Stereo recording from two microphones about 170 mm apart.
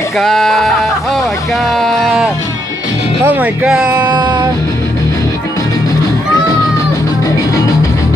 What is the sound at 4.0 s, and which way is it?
Music, 25° right (ahead or behind).